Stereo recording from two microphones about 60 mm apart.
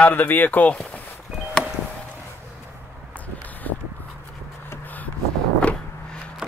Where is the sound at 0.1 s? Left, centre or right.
Left.